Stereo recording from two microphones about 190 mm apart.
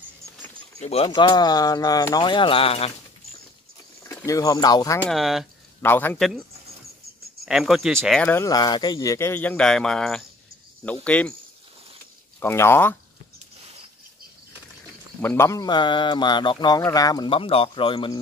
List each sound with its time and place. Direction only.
0.7 s speech: 35° left (ahead or behind)
4.0 s speech: 15° left (ahead or behind)
5.1 s speech: centre (ahead or behind)
5.8 s a man's voice: 10° left (ahead or behind)
7.4 s a man's voice: centre (ahead or behind)
12.4 s a man's voice: 15° left (ahead or behind)
15.2 s speech: 15° left (ahead or behind)